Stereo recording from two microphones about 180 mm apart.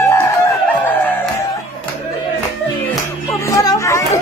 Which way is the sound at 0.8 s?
10° left (ahead or behind).